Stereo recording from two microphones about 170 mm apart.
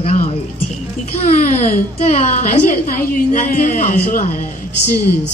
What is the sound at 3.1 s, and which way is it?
Speech, 50° left (ahead or behind).